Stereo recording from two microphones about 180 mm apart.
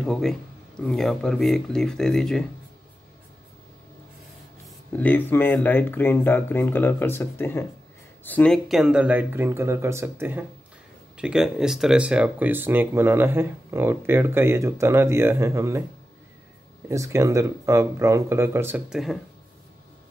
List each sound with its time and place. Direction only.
0.0 s speech: centre (ahead or behind)
4.9 s speech: 10° left (ahead or behind); by 15.8 s 15° right (ahead or behind)
16.9 s speech: 15° right (ahead or behind)